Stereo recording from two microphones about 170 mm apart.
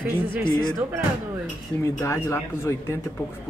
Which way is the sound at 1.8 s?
15° left (ahead or behind).